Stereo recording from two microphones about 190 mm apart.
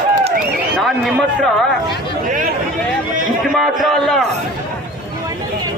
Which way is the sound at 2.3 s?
45° right (ahead or behind).